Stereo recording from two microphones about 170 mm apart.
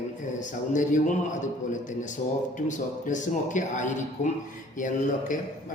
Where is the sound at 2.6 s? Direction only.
45° left (ahead or behind).